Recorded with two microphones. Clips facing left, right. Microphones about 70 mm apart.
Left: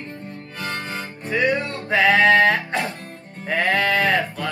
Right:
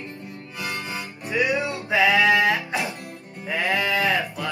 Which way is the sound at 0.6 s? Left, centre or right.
Left.